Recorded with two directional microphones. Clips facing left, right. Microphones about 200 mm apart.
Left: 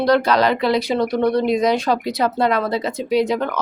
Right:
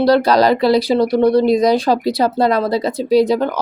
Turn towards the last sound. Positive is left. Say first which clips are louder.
# right 5 dB
turn(degrees=-35)  # may be behind; listen again after turning